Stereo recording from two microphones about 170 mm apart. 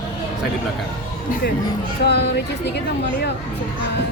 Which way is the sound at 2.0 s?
75° left (ahead or behind).